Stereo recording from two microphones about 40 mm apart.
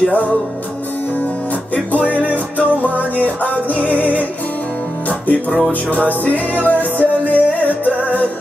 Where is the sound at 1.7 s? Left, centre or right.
Left.